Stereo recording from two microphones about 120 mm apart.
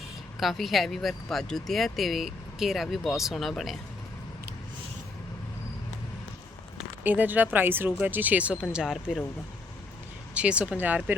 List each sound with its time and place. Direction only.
0.3 s speech: centre (ahead or behind)
7.0 s speech: 15° right (ahead or behind)
10.3 s speech: 10° right (ahead or behind)